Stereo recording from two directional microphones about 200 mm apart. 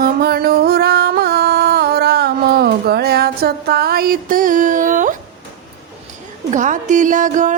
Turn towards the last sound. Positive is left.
turn(degrees=-40)  # may be behind; listen again after turning